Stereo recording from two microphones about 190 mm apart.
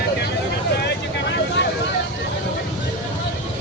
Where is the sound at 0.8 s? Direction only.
65° left (ahead or behind).